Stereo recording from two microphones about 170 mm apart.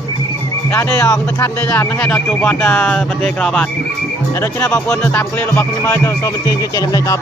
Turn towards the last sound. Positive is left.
turn(degrees=20)  # may be behind; listen again after turning